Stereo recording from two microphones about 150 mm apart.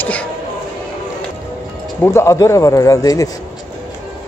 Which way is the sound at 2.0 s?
20° left (ahead or behind).